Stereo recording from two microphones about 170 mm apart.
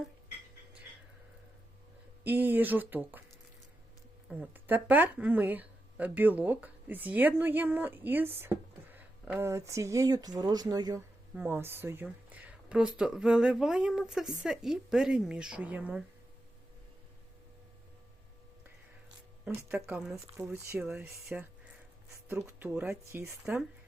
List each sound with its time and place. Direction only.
2.2 s speech: 10° right (ahead or behind)
4.3 s speech: 10° right (ahead or behind)
19.5 s speech: 10° right (ahead or behind)